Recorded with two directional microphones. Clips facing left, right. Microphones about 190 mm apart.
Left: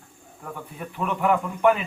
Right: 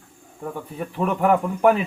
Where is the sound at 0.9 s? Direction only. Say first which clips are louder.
Right 4 dB; 35° right (ahead or behind).